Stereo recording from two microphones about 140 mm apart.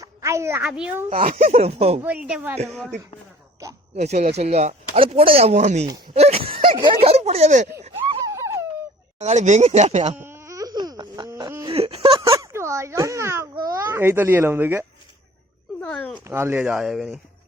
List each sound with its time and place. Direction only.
0.0 s a sound: 20° right (ahead or behind)
0.7 s a child's voice: 5° right (ahead or behind)
1.4 s speech: 45° right (ahead or behind)
2.0 s speech: 10° right (ahead or behind)
2.6 s a child's voice: 5° left (ahead or behind)
3.9 s speech: 55° right (ahead or behind)
8.3 s a sound: 20° right (ahead or behind)
9.1 s speech: 55° right (ahead or behind)
10.2 s baby cry: 15° right (ahead or behind)
11.7 s a sound: 45° right (ahead or behind)
12.3 s a child's voice: 20° right (ahead or behind)
14.0 s speech: 15° right (ahead or behind)
16.0 s speech: 10° left (ahead or behind)
16.2 s speech: 15° right (ahead or behind)